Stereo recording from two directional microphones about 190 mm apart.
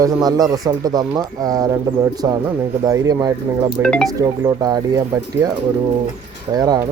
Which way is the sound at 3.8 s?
5° left (ahead or behind).